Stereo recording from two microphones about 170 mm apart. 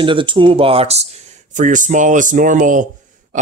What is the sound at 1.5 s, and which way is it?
Speech, 50° right (ahead or behind).